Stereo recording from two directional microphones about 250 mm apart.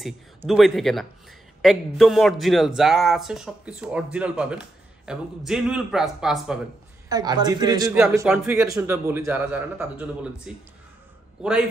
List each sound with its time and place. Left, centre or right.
0.0 s a man's voice: centre
7.1 s a man's voice: centre